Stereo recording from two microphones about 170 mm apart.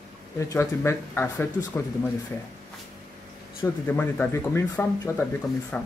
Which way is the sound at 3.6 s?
10° left (ahead or behind).